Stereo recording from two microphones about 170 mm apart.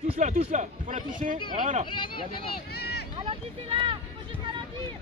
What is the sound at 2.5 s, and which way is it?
Run, 70° left (ahead or behind).